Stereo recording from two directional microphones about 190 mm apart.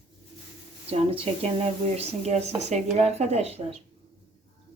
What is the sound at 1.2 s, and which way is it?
Speech, 30° right (ahead or behind).